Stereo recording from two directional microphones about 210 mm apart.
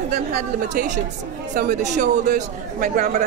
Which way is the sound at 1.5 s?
35° right (ahead or behind).